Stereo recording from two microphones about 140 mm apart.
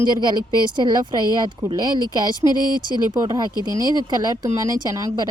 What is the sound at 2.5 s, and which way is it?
Speech, 30° left (ahead or behind).